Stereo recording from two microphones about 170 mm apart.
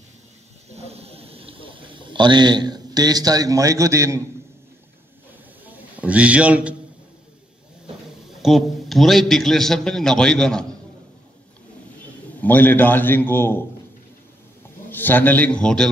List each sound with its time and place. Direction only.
0.7 s a sound: 40° right (ahead or behind); by 4.2 s 15° right (ahead or behind)
5.7 s a man's voice: 10° right (ahead or behind)
8.4 s a man's voice: centre (ahead or behind)
12.4 s a man's voice: 10° left (ahead or behind)
14.9 s a man's voice: 10° left (ahead or behind)